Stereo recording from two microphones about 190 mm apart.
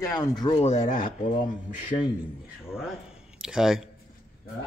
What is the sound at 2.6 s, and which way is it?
Speech, 5° right (ahead or behind).